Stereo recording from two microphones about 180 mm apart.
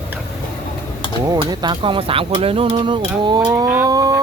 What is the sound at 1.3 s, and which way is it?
Speech, 25° right (ahead or behind).